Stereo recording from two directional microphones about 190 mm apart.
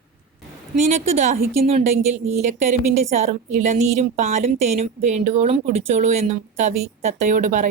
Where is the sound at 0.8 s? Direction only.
35° right (ahead or behind).